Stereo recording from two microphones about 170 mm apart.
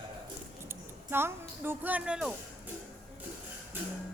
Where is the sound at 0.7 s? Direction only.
15° right (ahead or behind).